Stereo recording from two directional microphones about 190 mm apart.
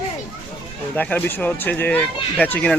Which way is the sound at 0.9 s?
10° left (ahead or behind).